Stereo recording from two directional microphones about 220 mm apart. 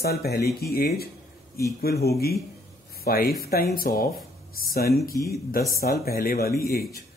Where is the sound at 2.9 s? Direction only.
45° left (ahead or behind).